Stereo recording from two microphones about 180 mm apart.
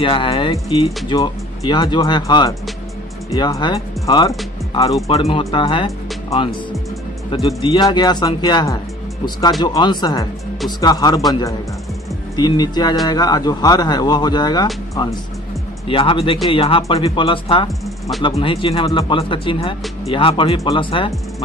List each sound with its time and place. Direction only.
0.0 s speech: 30° left (ahead or behind)
5.0 s speech: 35° left (ahead or behind)
15.9 s speech: 30° left (ahead or behind)